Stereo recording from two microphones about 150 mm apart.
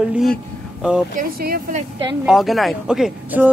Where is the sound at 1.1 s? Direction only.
85° right.